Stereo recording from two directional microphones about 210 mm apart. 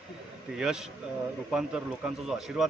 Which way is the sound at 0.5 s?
5° right (ahead or behind).